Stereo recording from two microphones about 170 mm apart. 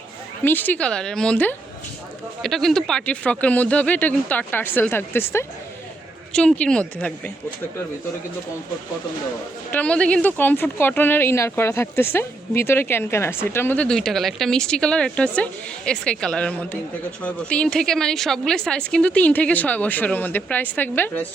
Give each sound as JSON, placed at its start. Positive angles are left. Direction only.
{"t": 0.4, "sound": "a woman's voice", "side_deg": 10}
{"t": 9.7, "sound": "a woman's voice", "side_deg": 5}